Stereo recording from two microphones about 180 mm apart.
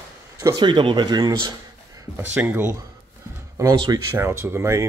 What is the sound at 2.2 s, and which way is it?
Speech, 10° right (ahead or behind).